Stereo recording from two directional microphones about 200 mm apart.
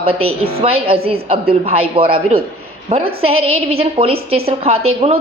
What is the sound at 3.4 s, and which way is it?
Speech, 90° right.